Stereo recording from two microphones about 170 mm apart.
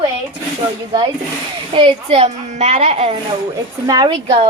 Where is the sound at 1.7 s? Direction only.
35° right (ahead or behind).